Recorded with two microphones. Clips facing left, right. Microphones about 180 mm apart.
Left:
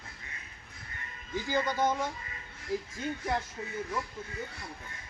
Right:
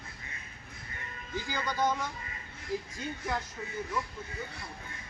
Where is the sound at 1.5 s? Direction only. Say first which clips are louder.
Left 2 dB; 25° left (ahead or behind).